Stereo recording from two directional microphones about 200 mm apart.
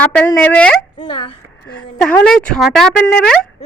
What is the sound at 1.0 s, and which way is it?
Speech, 25° left (ahead or behind).